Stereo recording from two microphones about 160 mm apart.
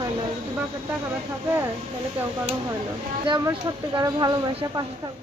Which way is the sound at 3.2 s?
30° right (ahead or behind).